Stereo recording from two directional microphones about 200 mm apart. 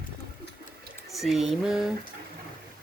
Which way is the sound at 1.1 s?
Centre (ahead or behind).